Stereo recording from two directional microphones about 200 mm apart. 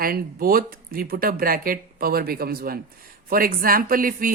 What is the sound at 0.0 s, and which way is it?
Speech, 50° right (ahead or behind).